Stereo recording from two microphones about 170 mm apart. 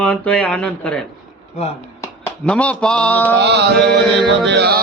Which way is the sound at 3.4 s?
90° right.